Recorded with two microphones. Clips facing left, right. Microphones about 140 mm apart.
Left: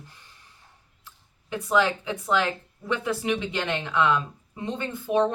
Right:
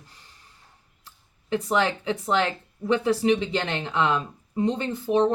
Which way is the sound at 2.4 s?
30° right (ahead or behind).